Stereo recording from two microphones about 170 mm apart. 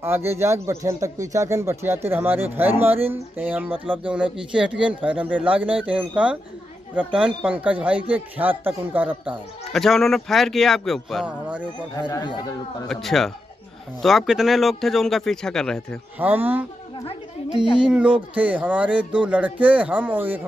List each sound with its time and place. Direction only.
0.0 s a man's voice: 15° right (ahead or behind)
3.8 s speech: 30° right (ahead or behind)
4.1 s a man's voice: 5° right (ahead or behind)
9.7 s a man's voice: centre (ahead or behind)
12.1 s speech: 25° left (ahead or behind)
12.8 s a man's voice: centre (ahead or behind)
16.2 s a man's voice: 10° right (ahead or behind)
17.7 s a man's voice: 5° right (ahead or behind)